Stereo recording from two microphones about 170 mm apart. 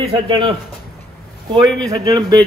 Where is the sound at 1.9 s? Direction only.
25° right (ahead or behind).